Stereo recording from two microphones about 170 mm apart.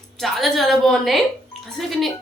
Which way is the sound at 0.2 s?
Centre (ahead or behind).